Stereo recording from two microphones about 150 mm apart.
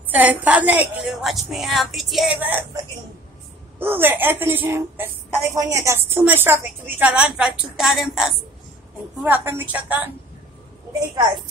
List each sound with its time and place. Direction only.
0.1 s a woman's voice: 10° right (ahead or behind)
3.8 s a woman's voice: 15° right (ahead or behind)
9.2 s a woman's voice: 15° right (ahead or behind)